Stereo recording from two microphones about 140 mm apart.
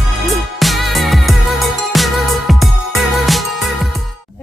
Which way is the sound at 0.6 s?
Centre (ahead or behind).